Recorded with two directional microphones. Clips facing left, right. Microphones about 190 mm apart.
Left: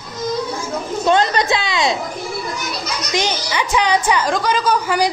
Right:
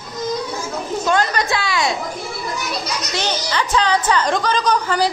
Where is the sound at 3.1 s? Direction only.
10° left (ahead or behind).